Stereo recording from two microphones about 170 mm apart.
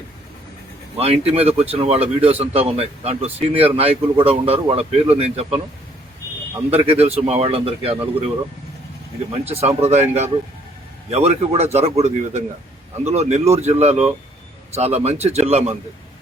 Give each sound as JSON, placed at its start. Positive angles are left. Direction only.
{"t": 0.9, "sound": "speech", "side_deg": -35}
{"t": 6.7, "sound": "speech", "side_deg": -35}
{"t": 9.3, "sound": "speech", "side_deg": -40}